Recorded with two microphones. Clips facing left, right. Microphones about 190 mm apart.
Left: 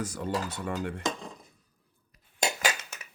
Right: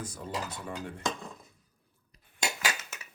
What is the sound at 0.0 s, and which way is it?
Dishes, 80° left.